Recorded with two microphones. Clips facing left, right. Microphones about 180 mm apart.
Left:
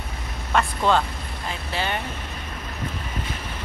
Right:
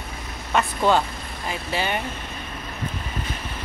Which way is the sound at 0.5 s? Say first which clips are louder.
Right 1 dB; 5° right (ahead or behind).